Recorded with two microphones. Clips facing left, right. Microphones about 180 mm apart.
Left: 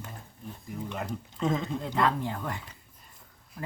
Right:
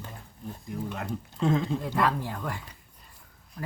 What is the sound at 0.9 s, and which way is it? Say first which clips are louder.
Speech: right 1 dB; centre (ahead or behind).